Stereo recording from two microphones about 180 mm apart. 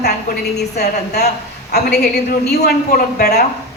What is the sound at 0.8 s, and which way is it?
A woman's voice, 65° left (ahead or behind).